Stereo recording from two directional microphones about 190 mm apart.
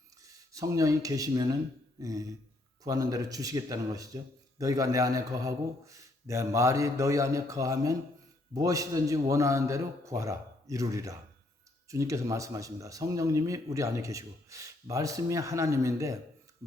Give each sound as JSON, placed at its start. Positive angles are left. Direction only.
{"t": 0.3, "sound": "speech", "side_deg": -15}